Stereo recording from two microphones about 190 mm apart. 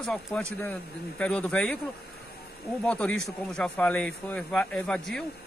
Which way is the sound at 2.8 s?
5° left (ahead or behind).